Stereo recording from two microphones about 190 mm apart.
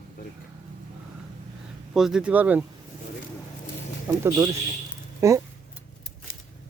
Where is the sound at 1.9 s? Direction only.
Centre (ahead or behind).